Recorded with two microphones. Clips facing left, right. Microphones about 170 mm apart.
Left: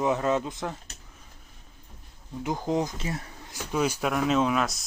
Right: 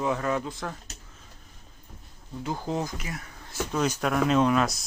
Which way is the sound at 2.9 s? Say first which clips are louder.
Left 3 dB; 30° left (ahead or behind).